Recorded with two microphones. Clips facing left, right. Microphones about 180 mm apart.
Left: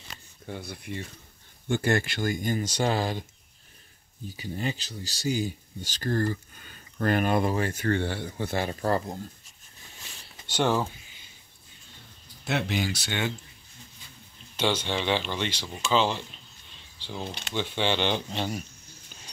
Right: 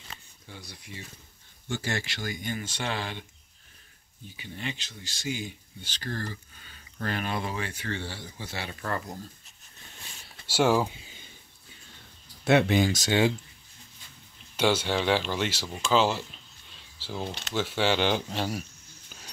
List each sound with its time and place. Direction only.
0.5 s speech: 60° left (ahead or behind); by 3.3 s 40° left (ahead or behind)
4.4 s speech: 40° left (ahead or behind)
8.8 s speech: 30° left (ahead or behind)
10.4 s speech: 5° right (ahead or behind)
12.4 s speech: 60° right (ahead or behind)
14.6 s speech: 10° right (ahead or behind)
17.3 s speech: 10° left (ahead or behind)
17.6 s speech: 5° right (ahead or behind)